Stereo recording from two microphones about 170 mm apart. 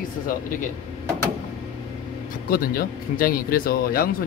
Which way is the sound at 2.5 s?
60° left (ahead or behind).